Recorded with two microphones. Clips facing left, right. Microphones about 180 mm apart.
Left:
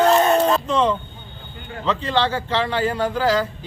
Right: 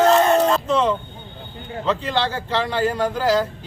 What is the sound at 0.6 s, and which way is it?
A man's voice, 5° right (ahead or behind).